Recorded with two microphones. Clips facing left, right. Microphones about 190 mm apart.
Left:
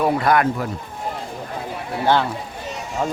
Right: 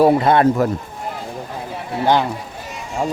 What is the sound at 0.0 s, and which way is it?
Speech, 25° right (ahead or behind).